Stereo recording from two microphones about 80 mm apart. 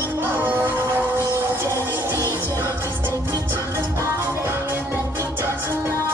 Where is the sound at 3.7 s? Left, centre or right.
Right.